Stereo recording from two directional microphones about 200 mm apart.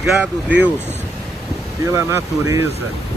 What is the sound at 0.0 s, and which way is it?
Speech, 5° right (ahead or behind).